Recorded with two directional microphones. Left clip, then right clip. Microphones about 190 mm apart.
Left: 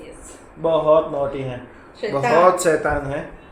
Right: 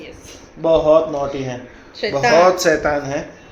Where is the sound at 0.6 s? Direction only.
15° right (ahead or behind).